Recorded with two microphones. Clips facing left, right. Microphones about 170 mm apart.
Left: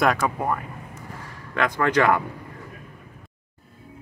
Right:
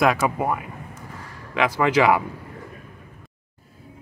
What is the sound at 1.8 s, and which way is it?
Speech, 5° right (ahead or behind).